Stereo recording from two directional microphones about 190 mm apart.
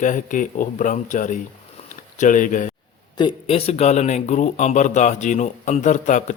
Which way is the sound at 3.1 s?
30° left (ahead or behind).